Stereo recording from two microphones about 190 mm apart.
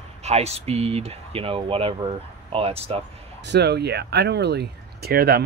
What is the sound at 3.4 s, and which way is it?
Speech, 60° right (ahead or behind).